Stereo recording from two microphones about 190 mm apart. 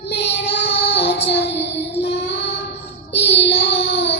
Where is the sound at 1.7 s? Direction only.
60° left (ahead or behind).